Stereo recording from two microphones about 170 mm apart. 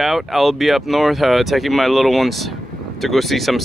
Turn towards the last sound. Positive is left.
turn(degrees=0)  # may be behind; listen again after turning